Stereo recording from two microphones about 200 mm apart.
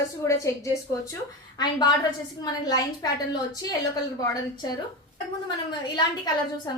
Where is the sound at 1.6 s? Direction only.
20° left (ahead or behind).